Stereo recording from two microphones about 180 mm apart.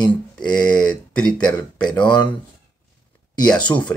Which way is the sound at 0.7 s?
5° left (ahead or behind).